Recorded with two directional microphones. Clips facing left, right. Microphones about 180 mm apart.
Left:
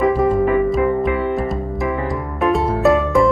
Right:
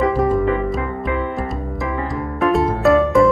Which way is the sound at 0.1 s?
Centre (ahead or behind).